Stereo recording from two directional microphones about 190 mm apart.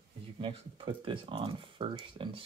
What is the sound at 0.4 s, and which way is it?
Speech, 25° right (ahead or behind).